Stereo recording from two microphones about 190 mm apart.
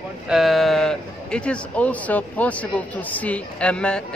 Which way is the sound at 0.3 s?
Centre (ahead or behind).